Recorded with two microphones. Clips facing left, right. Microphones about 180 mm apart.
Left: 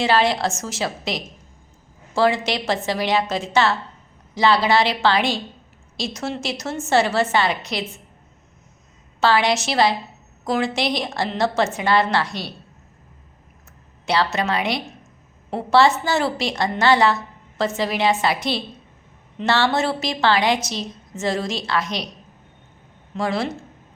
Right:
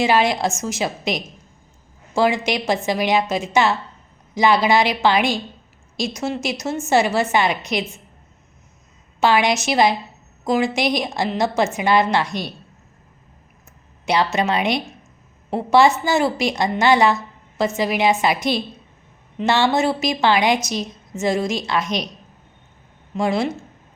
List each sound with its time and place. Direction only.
0.0 s a woman's voice: 15° right (ahead or behind)
9.2 s a woman's voice: 15° right (ahead or behind)
14.0 s a woman's voice: 15° right (ahead or behind)
23.1 s a woman's voice: 15° right (ahead or behind)